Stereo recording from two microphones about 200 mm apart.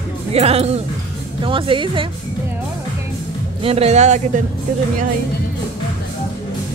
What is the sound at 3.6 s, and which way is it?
Speech, 30° right (ahead or behind).